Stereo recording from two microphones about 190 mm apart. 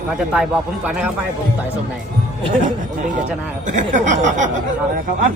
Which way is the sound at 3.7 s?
40° right (ahead or behind).